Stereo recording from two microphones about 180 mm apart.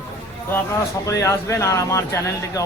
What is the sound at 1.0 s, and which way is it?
Speech, 15° left (ahead or behind).